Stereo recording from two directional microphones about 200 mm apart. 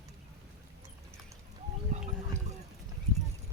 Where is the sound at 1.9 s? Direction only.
40° right (ahead or behind).